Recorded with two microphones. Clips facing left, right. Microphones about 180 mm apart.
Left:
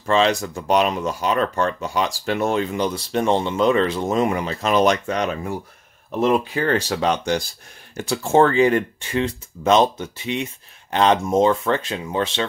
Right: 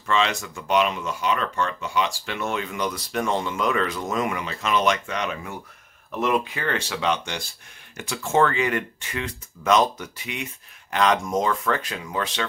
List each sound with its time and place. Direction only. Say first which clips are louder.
0.0 s speech: left 6 dB; 35° left (ahead or behind)